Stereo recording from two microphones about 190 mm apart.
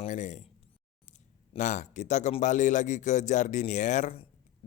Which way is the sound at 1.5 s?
40° left (ahead or behind).